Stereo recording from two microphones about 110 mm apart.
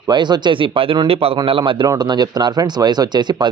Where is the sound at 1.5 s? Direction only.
50° right (ahead or behind).